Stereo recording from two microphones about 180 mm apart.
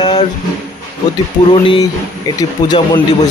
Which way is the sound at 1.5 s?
25° left (ahead or behind).